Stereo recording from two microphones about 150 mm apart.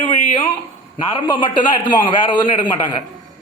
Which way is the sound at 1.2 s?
30° left (ahead or behind).